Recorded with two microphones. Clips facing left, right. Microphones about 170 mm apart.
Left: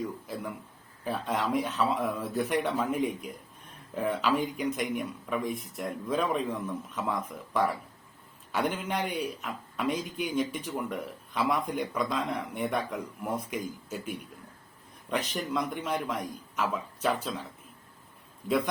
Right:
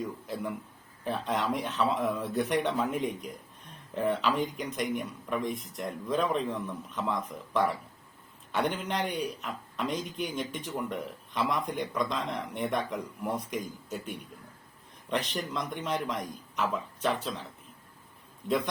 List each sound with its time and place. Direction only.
1.0 s speech: centre (ahead or behind)
15.1 s speech: 5° left (ahead or behind)
18.4 s speech: 5° left (ahead or behind)